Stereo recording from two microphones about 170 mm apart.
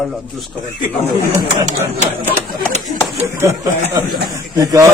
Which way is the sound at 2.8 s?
Centre (ahead or behind).